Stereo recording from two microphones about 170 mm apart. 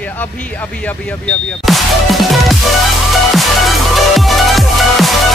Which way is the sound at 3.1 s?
Centre (ahead or behind).